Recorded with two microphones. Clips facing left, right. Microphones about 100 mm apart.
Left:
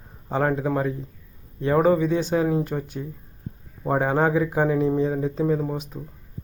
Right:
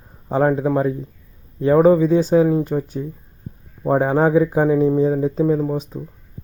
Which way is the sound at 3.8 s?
10° right (ahead or behind).